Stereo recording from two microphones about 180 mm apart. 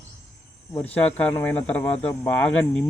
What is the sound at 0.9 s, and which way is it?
Speech, 10° left (ahead or behind).